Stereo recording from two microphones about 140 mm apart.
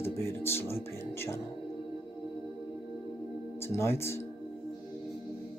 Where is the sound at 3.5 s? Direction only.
20° left (ahead or behind).